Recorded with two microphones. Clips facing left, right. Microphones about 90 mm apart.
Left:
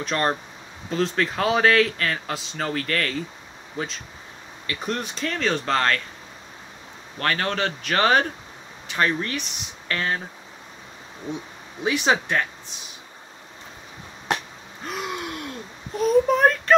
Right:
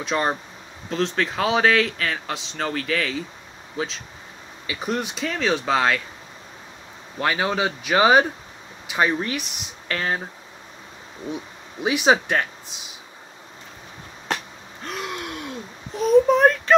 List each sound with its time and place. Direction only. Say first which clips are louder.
0.0 s speech: right 1 dB; 5° right (ahead or behind)
7.2 s speech: right 2 dB; 10° right (ahead or behind)
11.8 s speech: right 3 dB; 15° right (ahead or behind)
14.9 s a sound: left 1 dB; centre (ahead or behind)